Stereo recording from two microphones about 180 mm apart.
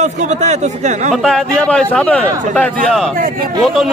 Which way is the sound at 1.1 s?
5° left (ahead or behind).